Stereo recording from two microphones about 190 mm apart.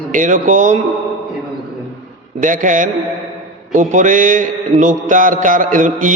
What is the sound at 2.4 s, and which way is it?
Mantra, 45° right (ahead or behind).